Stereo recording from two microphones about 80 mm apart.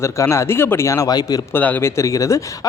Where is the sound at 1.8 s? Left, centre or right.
Left.